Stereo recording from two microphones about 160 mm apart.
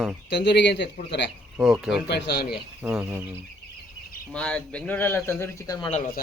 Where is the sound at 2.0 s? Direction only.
90° left.